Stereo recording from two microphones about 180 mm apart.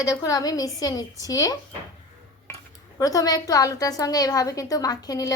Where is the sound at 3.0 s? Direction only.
20° left (ahead or behind).